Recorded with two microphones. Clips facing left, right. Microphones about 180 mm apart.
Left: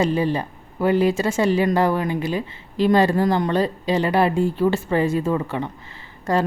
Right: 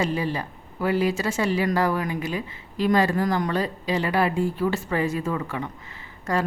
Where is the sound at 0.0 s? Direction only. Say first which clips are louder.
Left 5 dB; 30° left (ahead or behind).